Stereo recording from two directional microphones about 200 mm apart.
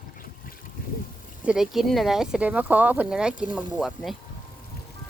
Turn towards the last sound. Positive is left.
turn(degrees=0)  # may be behind; listen again after turning